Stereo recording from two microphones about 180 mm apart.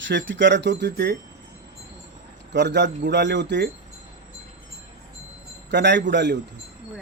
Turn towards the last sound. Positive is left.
turn(degrees=-75)  # may be behind; listen again after turning